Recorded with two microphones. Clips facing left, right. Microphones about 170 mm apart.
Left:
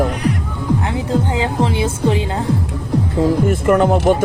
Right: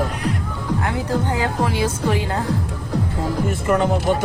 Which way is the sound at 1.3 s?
20° left (ahead or behind).